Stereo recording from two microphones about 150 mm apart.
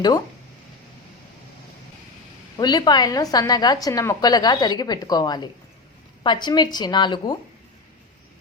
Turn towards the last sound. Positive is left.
turn(degrees=30)  # may be behind; listen again after turning